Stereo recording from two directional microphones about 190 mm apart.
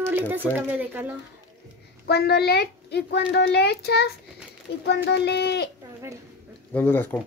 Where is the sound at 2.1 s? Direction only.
60° left (ahead or behind).